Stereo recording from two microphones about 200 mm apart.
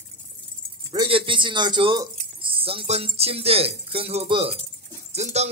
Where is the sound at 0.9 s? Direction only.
25° right (ahead or behind).